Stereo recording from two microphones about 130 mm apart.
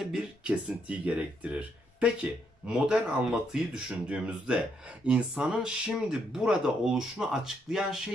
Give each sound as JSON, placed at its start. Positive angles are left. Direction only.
{"t": 0.0, "sound": "speech", "side_deg": -5}